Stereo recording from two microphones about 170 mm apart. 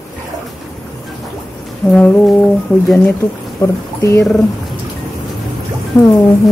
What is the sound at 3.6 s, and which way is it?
Speech, 15° left (ahead or behind).